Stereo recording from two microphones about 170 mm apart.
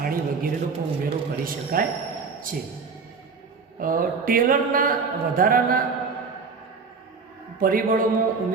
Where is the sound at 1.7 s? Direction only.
55° right (ahead or behind).